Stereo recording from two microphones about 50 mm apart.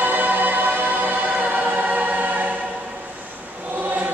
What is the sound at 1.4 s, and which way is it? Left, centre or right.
Choir, right.